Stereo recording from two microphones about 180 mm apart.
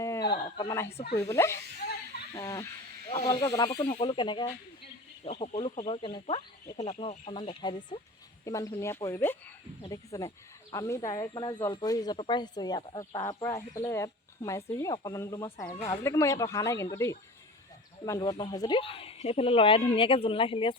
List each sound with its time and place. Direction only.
0.0 s a sound: 15° left (ahead or behind)
0.3 s speech: 25° left (ahead or behind)
3.8 s speech: 35° left (ahead or behind)